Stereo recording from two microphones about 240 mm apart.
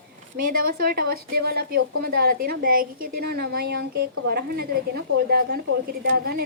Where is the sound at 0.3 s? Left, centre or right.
Right.